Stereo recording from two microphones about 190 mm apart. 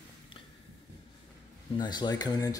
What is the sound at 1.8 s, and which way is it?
Speech, 20° left (ahead or behind).